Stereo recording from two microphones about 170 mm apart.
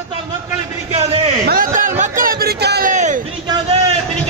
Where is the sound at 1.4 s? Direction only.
55° right (ahead or behind).